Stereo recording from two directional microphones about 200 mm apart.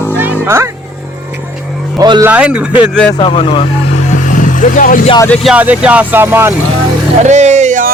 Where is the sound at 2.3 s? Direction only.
5° right (ahead or behind).